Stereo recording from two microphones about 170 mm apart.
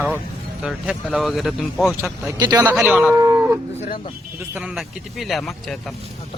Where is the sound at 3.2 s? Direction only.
15° right (ahead or behind).